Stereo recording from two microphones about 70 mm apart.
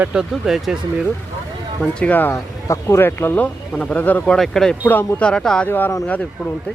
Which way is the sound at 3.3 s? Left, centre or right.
Left.